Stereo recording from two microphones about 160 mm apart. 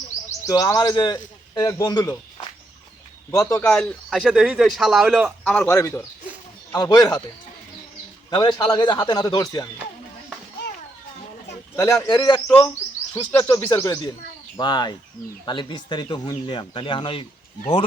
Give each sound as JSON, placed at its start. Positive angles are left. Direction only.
{"t": 0.4, "sound": "speech", "side_deg": 20}
{"t": 3.3, "sound": "speech", "side_deg": 15}
{"t": 3.6, "sound": "a man's voice", "side_deg": 5}
{"t": 5.5, "sound": "speech", "side_deg": 10}
{"t": 8.3, "sound": "speech", "side_deg": 25}
{"t": 11.8, "sound": "speech", "side_deg": 20}
{"t": 12.5, "sound": "speech", "side_deg": 15}